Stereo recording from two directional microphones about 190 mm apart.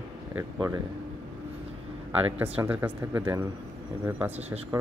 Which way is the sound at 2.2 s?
10° right (ahead or behind).